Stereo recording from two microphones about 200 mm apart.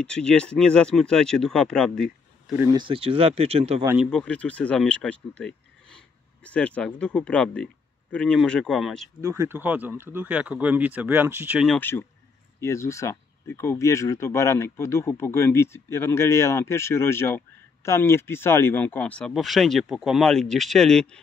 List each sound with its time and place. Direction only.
0.0 s speech: 5° left (ahead or behind)
2.5 s speech: 15° right (ahead or behind)
3.8 s speech: 10° right (ahead or behind)
4.1 s speech: 5° left (ahead or behind)
9.2 s speech: 15° right (ahead or behind)
11.8 s speech: 10° left (ahead or behind)